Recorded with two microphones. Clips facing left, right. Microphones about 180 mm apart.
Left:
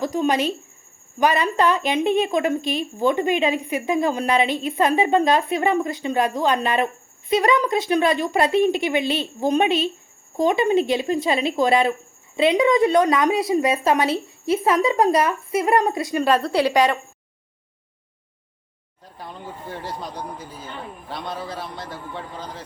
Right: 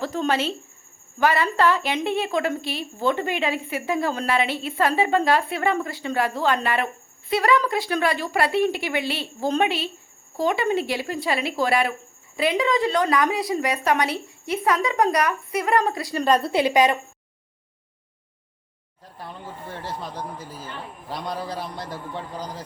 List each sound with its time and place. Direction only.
0.0 s a woman's voice: 15° left (ahead or behind)
16.1 s speech: 5° left (ahead or behind)
16.5 s a woman's voice: 20° right (ahead or behind)
19.1 s a man's voice: 5° right (ahead or behind)